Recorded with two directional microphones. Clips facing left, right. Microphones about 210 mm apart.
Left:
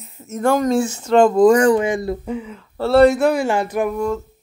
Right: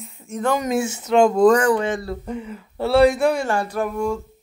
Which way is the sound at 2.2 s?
Centre (ahead or behind).